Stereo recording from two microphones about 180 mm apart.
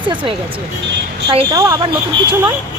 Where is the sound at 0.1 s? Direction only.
30° right (ahead or behind).